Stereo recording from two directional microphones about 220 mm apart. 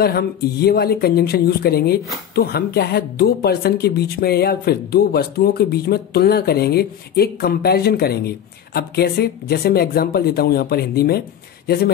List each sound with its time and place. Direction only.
0.0 s speech: 45° left (ahead or behind)